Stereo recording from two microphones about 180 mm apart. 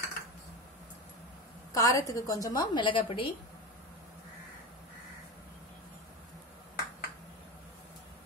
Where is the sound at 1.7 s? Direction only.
20° left (ahead or behind).